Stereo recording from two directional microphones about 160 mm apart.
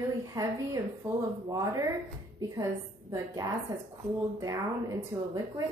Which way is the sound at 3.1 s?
25° right (ahead or behind).